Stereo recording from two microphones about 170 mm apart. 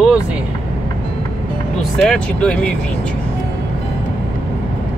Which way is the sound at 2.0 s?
5° left (ahead or behind).